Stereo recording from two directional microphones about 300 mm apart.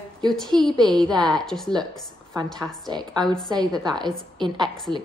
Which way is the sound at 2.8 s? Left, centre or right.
Centre.